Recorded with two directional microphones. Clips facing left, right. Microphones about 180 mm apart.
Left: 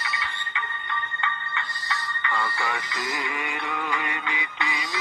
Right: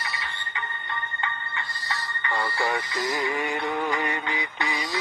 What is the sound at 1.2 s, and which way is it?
Music, 35° right (ahead or behind).